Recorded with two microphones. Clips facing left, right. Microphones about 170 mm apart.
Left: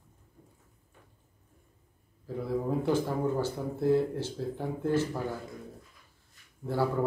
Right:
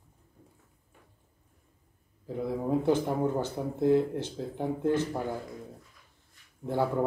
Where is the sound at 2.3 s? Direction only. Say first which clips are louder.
Right 1 dB; 20° right (ahead or behind).